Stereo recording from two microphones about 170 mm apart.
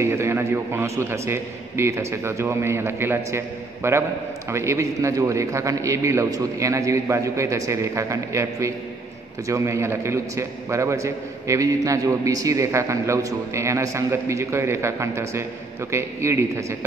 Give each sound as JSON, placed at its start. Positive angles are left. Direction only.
{"t": 0.0, "sound": "a man's voice", "side_deg": -15}